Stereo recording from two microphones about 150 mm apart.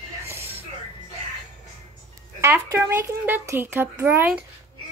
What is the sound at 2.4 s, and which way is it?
Speech, 15° right (ahead or behind).